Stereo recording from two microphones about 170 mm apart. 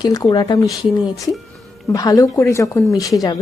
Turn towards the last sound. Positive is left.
turn(degrees=20)  # may be behind; listen again after turning